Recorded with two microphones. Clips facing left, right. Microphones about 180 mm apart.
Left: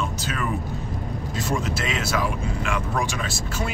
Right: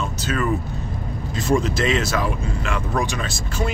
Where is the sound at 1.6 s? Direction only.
5° left (ahead or behind).